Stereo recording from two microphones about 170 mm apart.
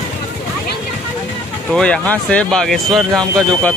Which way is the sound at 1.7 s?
5° left (ahead or behind).